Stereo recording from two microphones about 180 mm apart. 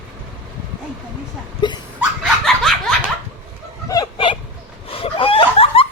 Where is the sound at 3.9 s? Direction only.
20° left (ahead or behind).